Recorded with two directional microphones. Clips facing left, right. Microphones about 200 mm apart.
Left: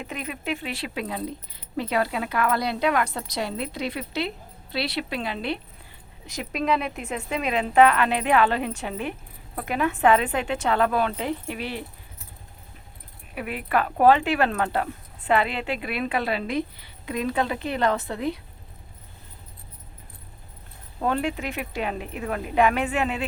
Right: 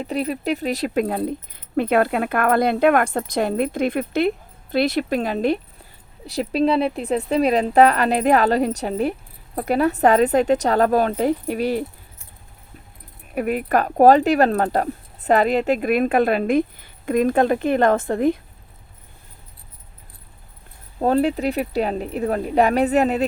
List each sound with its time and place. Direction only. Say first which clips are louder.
0.0 s speech: right 9 dB; 35° right (ahead or behind)
13.3 s speech: right 6 dB; 45° right (ahead or behind)
21.0 s speech: right 7 dB; 35° right (ahead or behind)